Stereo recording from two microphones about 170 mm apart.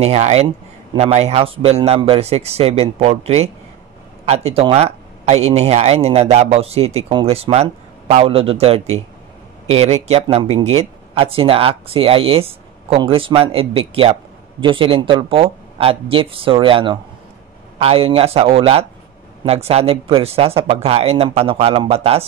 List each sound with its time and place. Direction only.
0.0 s speech: 40° right (ahead or behind)